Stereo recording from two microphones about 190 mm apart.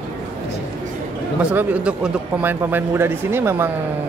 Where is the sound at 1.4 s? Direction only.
10° right (ahead or behind).